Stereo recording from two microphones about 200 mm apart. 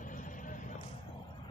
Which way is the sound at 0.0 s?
40° left (ahead or behind).